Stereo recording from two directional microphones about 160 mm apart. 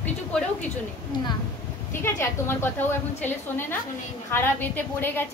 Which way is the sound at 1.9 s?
15° left (ahead or behind).